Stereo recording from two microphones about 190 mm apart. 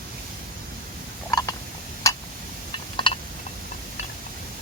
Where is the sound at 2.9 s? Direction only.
25° left (ahead or behind).